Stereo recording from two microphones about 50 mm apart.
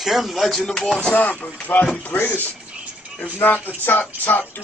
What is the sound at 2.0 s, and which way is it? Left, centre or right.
A man's voice, left.